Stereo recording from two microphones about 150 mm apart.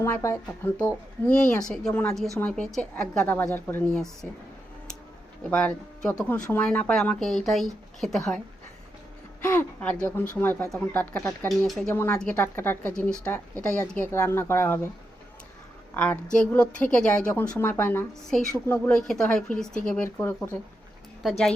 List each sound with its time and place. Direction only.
0.0 s speech: 20° left (ahead or behind)
1.3 s a woman's voice: 5° left (ahead or behind)
5.4 s a woman's voice: 10° left (ahead or behind)
9.4 s a woman's voice: 15° left (ahead or behind)
11.3 s speech: centre (ahead or behind)
11.9 s a woman's voice: 15° left (ahead or behind)
16.0 s a woman's voice: 10° left (ahead or behind)
21.2 s speech: centre (ahead or behind)